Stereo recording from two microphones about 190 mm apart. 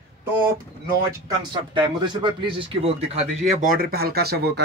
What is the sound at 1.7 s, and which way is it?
Speech, 25° right (ahead or behind).